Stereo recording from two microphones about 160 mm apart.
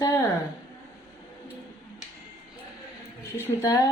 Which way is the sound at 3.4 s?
20° left (ahead or behind).